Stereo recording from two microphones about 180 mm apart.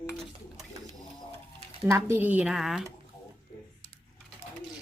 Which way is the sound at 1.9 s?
15° right (ahead or behind).